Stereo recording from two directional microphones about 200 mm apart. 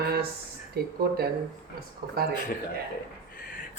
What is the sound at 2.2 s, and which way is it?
Speech, 50° right (ahead or behind).